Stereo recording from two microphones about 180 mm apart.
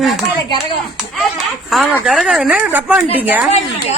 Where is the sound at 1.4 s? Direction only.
5° right (ahead or behind).